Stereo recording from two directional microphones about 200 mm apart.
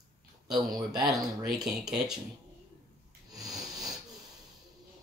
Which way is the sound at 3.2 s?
20° right (ahead or behind).